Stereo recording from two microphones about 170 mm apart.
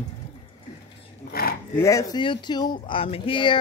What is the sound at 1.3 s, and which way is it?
Speech, 65° left (ahead or behind).